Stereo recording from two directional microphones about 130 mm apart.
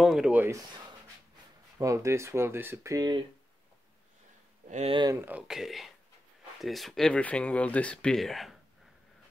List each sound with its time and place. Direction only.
0.0 s speech: 5° right (ahead or behind)
1.8 s speech: 25° right (ahead or behind)
4.6 s speech: 60° right (ahead or behind)
5.1 s speech: 15° right (ahead or behind)
5.5 s speech: centre (ahead or behind)